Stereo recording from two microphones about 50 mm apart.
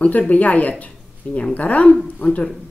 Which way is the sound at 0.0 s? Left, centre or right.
Left.